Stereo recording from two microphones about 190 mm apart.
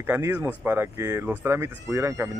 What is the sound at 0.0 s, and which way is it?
Speech, 10° right (ahead or behind).